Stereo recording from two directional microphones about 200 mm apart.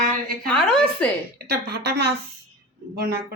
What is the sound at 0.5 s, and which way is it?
Speech, 5° left (ahead or behind).